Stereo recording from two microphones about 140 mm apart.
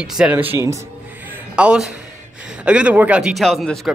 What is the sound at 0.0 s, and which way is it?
A man's voice, 5° right (ahead or behind).